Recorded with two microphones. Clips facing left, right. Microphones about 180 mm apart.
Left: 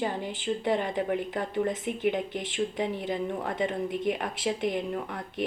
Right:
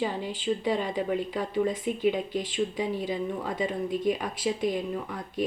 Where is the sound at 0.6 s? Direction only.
55° left (ahead or behind).